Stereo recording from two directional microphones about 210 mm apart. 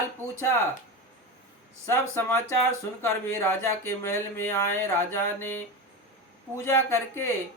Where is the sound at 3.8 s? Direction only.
10° left (ahead or behind).